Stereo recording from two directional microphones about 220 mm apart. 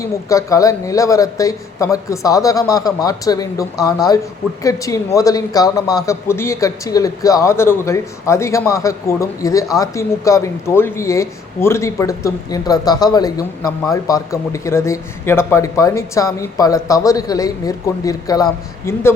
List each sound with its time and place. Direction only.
0.0 s a man's voice: 15° left (ahead or behind)